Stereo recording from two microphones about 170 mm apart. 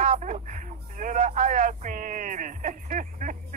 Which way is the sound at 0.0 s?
45° right (ahead or behind).